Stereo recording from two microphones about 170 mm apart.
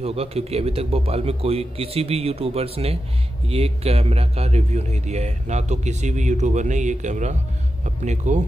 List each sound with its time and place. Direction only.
0.0 s a man's voice: 35° right (ahead or behind)